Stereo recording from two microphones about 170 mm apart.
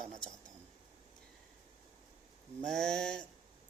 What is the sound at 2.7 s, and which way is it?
Mantra, 5° left (ahead or behind).